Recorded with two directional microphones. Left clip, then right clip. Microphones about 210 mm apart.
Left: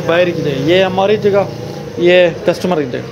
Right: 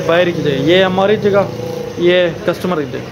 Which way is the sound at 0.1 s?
5° right (ahead or behind).